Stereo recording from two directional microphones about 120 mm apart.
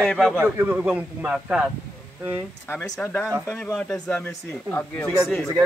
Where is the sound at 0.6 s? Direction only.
15° right (ahead or behind).